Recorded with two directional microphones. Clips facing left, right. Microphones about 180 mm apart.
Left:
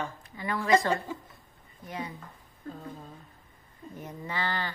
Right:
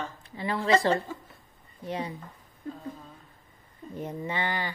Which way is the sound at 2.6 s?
20° right (ahead or behind).